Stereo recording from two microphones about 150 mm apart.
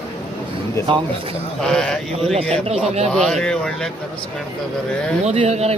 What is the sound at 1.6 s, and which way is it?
Speech, 5° left (ahead or behind).